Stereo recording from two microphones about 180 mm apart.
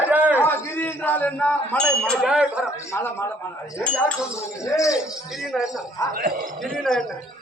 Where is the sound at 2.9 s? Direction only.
15° left (ahead or behind).